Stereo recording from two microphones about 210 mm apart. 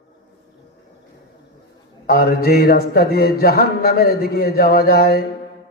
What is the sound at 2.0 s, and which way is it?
Mantra, 45° left (ahead or behind).